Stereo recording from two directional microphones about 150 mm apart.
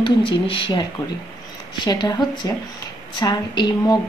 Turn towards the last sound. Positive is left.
turn(degrees=30)  # may be behind; listen again after turning